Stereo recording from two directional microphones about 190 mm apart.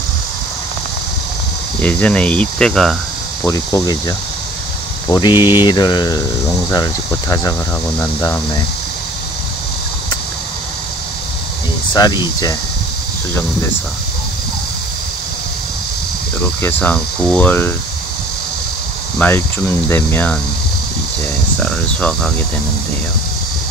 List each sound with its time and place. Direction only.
1.8 s speech: 10° left (ahead or behind)
3.4 s speech: 15° left (ahead or behind)
5.0 s speech: 20° left (ahead or behind)
11.9 s speech: 20° left (ahead or behind)
16.6 s speech: 10° left (ahead or behind)
19.1 s speech: 10° left (ahead or behind)
21.6 s speech: 5° left (ahead or behind)